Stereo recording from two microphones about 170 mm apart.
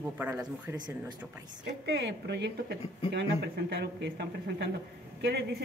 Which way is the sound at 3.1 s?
80° right.